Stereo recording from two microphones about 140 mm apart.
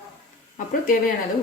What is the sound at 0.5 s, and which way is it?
Speech, 80° left.